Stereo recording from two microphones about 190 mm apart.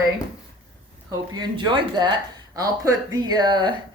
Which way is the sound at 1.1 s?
20° right (ahead or behind).